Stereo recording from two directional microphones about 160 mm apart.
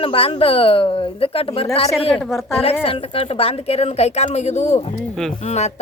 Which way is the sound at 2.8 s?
35° left (ahead or behind).